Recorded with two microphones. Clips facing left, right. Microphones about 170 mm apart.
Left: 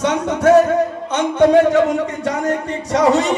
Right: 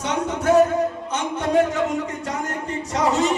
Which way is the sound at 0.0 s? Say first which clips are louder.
Left 7 dB; 75° left (ahead or behind).